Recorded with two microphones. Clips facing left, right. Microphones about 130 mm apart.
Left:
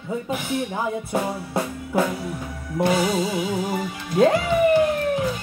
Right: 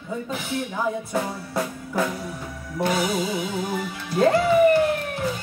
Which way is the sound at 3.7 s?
5° left (ahead or behind).